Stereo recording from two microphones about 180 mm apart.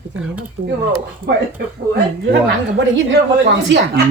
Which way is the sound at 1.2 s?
60° right (ahead or behind).